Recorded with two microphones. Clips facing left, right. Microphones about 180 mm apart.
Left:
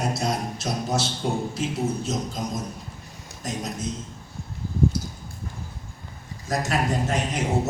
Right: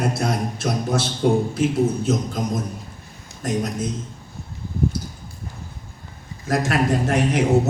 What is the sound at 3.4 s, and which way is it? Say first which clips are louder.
Speech: right 8 dB; 55° right (ahead or behind).